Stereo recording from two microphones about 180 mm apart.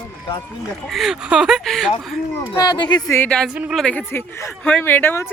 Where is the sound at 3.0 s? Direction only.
10° left (ahead or behind).